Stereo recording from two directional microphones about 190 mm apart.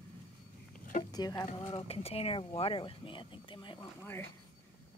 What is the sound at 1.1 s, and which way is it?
Speech, 20° left (ahead or behind).